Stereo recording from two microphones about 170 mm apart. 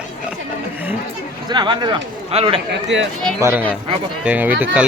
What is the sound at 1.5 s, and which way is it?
Speech, 25° right (ahead or behind).